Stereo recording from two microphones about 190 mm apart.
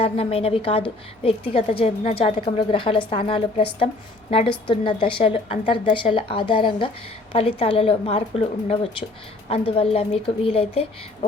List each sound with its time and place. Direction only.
0.0 s a woman's voice: 30° left (ahead or behind)